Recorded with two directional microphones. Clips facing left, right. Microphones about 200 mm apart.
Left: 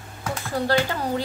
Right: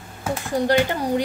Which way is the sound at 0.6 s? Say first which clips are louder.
Right 3 dB; 15° right (ahead or behind).